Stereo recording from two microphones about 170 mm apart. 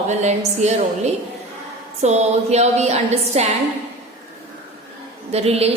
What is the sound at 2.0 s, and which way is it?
A woman's voice, 40° right (ahead or behind).